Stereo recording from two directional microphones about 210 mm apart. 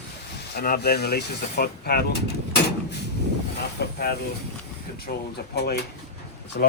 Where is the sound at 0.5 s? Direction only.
50° left (ahead or behind).